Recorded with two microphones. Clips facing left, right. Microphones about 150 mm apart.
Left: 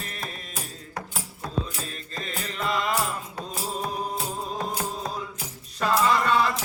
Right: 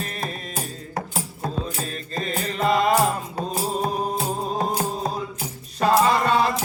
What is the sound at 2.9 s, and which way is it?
Music, 40° right (ahead or behind).